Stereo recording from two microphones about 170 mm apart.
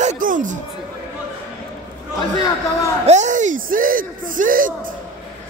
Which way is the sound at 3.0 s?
40° right (ahead or behind).